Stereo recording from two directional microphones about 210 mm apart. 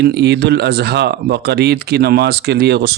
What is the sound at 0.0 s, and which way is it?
Speech, 55° right (ahead or behind).